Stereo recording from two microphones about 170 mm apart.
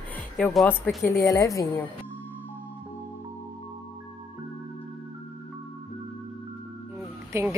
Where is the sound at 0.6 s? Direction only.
15° left (ahead or behind).